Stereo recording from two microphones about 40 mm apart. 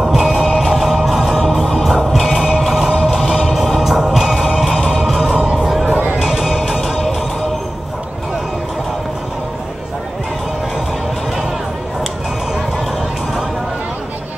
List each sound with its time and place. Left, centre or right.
0.0 s music: centre
0.3 s music: centre
2.3 s music: centre
2.6 s music: centre